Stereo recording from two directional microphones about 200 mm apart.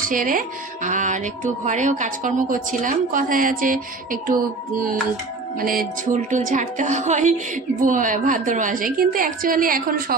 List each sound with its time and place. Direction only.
0.0 s speech: 45° right (ahead or behind)
5.6 s a woman's voice: 45° right (ahead or behind)